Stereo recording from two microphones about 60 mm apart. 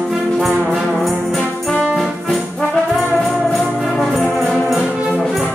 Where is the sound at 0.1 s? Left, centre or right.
Centre.